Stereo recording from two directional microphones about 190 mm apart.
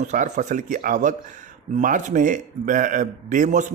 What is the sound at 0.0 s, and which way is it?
A man's voice, 40° right (ahead or behind).